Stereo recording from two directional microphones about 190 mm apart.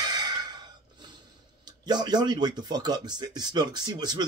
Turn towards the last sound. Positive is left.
turn(degrees=-20)  # may be behind; listen again after turning